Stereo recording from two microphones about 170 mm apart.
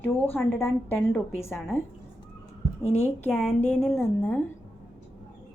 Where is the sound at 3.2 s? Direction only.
10° left (ahead or behind).